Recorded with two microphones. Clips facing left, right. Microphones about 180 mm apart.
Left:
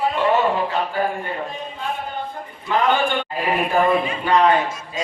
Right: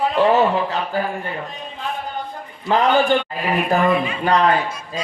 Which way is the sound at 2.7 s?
40° right (ahead or behind).